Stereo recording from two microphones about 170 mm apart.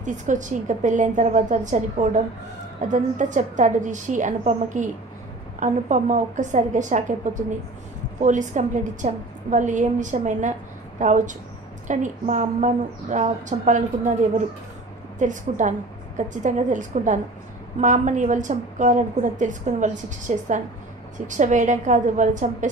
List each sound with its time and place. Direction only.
0.0 s a woman's voice: 45° right (ahead or behind)